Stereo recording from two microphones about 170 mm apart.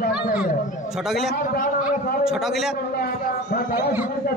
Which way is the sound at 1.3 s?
60° left (ahead or behind).